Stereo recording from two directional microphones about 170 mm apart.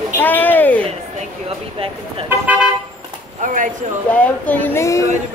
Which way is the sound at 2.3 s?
10° right (ahead or behind).